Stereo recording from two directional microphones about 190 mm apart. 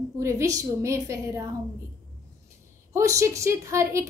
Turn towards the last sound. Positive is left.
turn(degrees=-15)  # may be behind; listen again after turning